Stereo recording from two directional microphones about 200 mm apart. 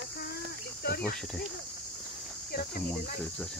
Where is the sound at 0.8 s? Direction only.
50° left (ahead or behind).